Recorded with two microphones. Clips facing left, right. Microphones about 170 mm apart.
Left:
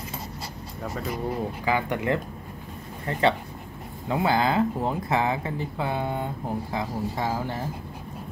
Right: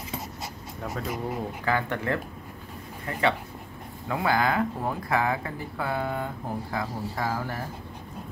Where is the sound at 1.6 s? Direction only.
15° left (ahead or behind).